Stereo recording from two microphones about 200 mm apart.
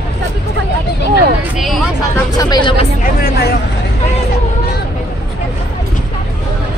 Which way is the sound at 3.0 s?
50° left (ahead or behind).